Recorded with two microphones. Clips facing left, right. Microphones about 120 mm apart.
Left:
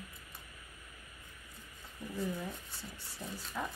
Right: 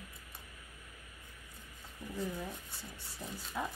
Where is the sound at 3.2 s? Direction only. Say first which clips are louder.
Left 1 dB; 15° right (ahead or behind).